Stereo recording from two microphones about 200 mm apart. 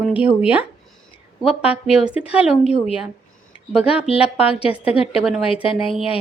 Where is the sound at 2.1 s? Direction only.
5° right (ahead or behind).